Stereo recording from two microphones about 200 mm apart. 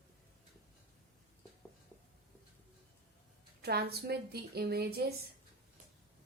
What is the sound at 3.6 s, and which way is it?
Speech, 55° right (ahead or behind).